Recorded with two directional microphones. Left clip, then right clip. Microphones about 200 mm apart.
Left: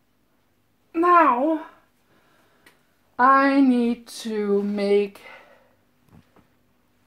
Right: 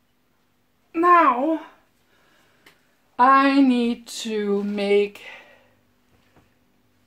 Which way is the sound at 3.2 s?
Centre (ahead or behind).